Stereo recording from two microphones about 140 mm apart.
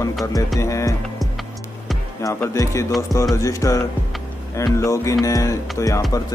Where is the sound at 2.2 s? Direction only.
20° left (ahead or behind).